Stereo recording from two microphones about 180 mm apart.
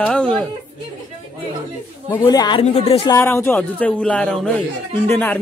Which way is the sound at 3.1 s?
15° left (ahead or behind).